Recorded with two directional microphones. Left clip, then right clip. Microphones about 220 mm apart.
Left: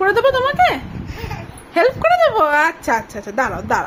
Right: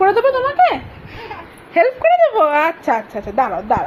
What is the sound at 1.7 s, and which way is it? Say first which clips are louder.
A woman's voice: right 1 dB; 5° left (ahead or behind).